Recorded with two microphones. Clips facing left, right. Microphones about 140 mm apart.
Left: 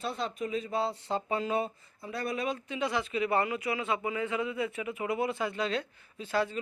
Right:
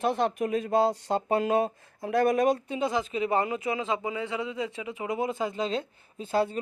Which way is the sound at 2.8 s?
25° right (ahead or behind).